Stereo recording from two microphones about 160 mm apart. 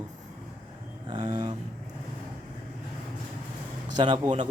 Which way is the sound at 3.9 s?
30° right (ahead or behind).